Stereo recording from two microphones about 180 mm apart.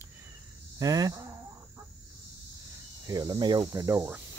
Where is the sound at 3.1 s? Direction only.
20° right (ahead or behind).